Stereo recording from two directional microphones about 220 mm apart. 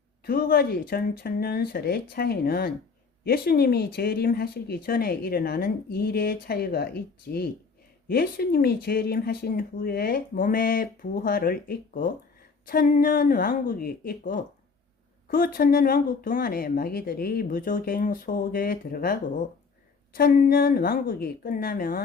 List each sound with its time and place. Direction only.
0.3 s speech: 40° left (ahead or behind)
12.6 s speech: 40° left (ahead or behind)